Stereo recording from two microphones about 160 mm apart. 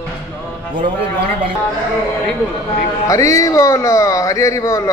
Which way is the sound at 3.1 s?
20° left (ahead or behind).